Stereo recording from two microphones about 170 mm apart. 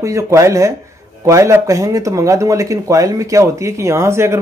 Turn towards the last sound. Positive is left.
turn(degrees=-15)  # may be behind; listen again after turning